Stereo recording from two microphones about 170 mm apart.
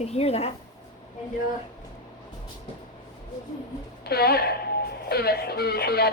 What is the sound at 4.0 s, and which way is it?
Speech, 70° left (ahead or behind).